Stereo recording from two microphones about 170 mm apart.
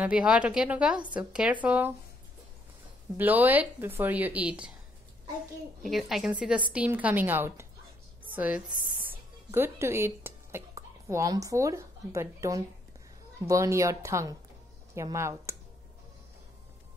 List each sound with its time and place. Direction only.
0.0 s a woman's voice: 5° right (ahead or behind)
3.2 s a woman's voice: 10° right (ahead or behind)
5.8 s a woman's voice: centre (ahead or behind)